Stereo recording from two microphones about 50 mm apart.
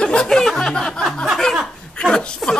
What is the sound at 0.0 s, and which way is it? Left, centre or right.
Chuckle, centre.